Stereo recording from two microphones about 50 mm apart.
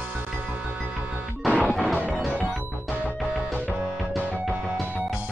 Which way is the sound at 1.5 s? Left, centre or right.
Left.